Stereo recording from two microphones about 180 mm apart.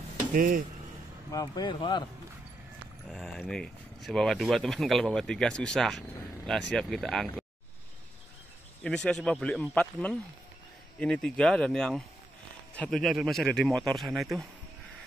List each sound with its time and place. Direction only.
0.3 s speech: 50° right (ahead or behind)
1.3 s speech: 20° left (ahead or behind)
3.1 s speech: centre (ahead or behind)
8.8 s speech: 5° left (ahead or behind)